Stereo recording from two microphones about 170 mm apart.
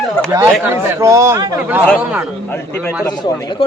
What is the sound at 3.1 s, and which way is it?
Speech, 20° left (ahead or behind).